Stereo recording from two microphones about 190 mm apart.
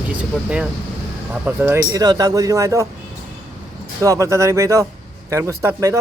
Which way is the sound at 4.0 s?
15° right (ahead or behind).